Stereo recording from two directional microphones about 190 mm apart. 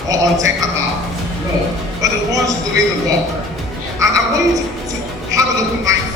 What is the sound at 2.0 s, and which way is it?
Speech, 20° right (ahead or behind).